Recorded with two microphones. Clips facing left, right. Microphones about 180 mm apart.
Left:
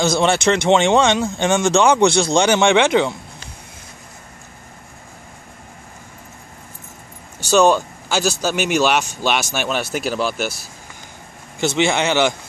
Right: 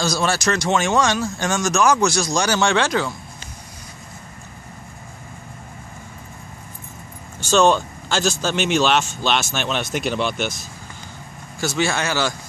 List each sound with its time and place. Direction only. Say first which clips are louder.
0.0 s speech: left 5 dB; 25° left (ahead or behind)
7.5 s speech: left 2 dB; 10° left (ahead or behind)
11.6 s speech: left 4 dB; 20° left (ahead or behind)